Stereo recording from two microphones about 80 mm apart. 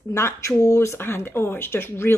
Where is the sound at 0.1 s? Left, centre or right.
Left.